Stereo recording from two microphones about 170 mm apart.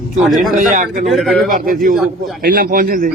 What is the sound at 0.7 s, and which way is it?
Speech, 50° right (ahead or behind).